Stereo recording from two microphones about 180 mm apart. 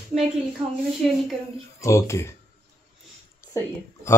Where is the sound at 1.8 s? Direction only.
15° left (ahead or behind).